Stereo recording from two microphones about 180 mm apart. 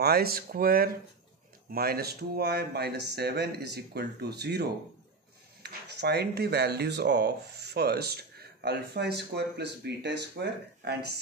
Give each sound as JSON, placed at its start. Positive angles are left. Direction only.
{"t": 0.0, "sound": "speech", "side_deg": -60}